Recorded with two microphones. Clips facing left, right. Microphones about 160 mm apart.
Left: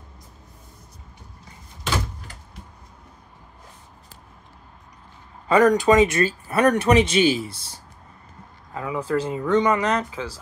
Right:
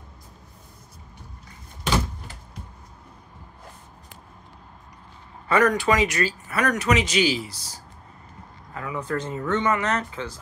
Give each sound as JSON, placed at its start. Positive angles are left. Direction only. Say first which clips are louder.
{"t": 5.5, "sound": "speech", "louder": "left 4 dB", "side_deg": 20}
{"t": 8.7, "sound": "speech", "louder": "left 4 dB", "side_deg": 20}
{"t": 9.0, "sound": "speech", "louder": "left 4 dB", "side_deg": 10}